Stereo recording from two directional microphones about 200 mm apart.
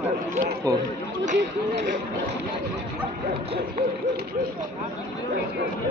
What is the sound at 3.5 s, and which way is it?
Hoot, 50° right (ahead or behind).